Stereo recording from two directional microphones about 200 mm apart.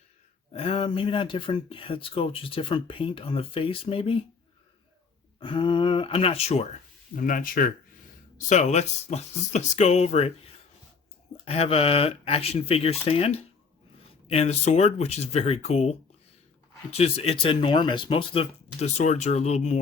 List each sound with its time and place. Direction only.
0.5 s speech: 30° left (ahead or behind)
5.4 s speech: 25° left (ahead or behind)
7.2 s speech: 45° left (ahead or behind)